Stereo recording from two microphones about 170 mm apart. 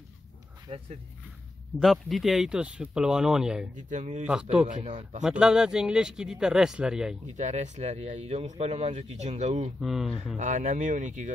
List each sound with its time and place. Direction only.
0.7 s speech: 25° right (ahead or behind)
1.8 s speech: centre (ahead or behind)
3.9 s speech: 40° right (ahead or behind)
4.3 s speech: 5° right (ahead or behind)
4.6 s speech: 45° right (ahead or behind)
5.2 s speech: 5° right (ahead or behind)
7.3 s speech: 45° right (ahead or behind)
9.8 s speech: centre (ahead or behind)
10.3 s speech: 45° right (ahead or behind)